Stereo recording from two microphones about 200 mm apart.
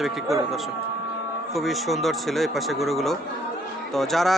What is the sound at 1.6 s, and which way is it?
A man's voice, centre (ahead or behind).